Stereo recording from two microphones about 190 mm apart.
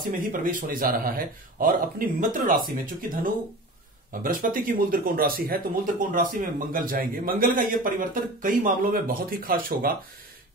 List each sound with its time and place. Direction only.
0.3 s speech: 45° right (ahead or behind)
4.1 s speech: 45° right (ahead or behind)